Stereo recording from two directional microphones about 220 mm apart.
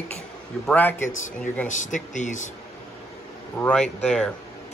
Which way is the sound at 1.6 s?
35° left (ahead or behind).